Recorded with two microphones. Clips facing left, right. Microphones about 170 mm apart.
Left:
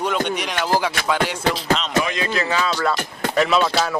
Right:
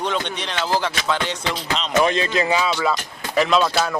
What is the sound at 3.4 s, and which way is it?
Speech, centre (ahead or behind).